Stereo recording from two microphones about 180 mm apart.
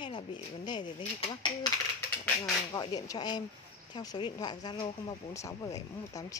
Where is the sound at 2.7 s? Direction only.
20° left (ahead or behind).